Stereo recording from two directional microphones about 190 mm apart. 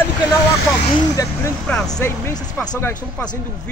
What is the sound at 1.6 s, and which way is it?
Speech, 5° left (ahead or behind).